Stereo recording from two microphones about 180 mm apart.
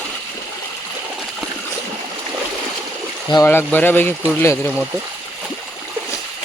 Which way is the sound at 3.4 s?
10° left (ahead or behind).